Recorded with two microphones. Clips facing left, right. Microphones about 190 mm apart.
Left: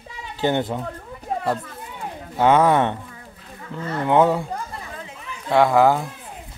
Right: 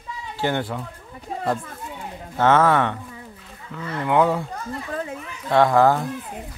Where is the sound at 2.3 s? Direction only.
15° left (ahead or behind).